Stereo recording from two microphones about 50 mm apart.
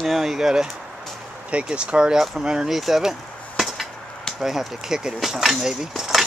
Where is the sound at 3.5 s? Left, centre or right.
Centre.